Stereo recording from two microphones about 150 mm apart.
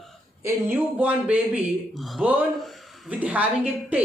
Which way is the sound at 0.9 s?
10° right (ahead or behind).